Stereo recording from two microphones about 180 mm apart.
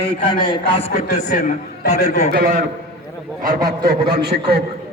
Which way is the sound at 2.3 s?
55° right (ahead or behind).